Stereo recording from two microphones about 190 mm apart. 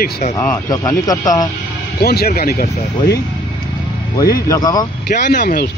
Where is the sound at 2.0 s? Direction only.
55° left (ahead or behind).